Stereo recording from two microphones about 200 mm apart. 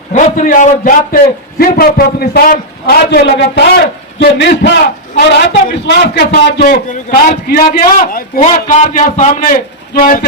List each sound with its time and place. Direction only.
0.1 s a man's voice: 35° left (ahead or behind)